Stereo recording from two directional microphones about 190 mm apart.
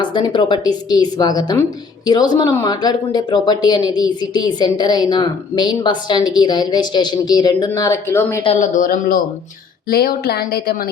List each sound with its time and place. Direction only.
0.0 s speech: 25° left (ahead or behind)
8.4 s speech: 35° left (ahead or behind); by 10.8 s 55° left (ahead or behind)